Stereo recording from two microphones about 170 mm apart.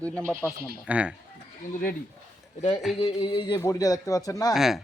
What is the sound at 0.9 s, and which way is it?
Speech, 5° right (ahead or behind).